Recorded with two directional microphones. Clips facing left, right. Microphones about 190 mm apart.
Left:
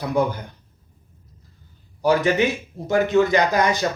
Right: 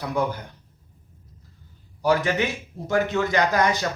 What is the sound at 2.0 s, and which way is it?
A man's voice, 20° left (ahead or behind).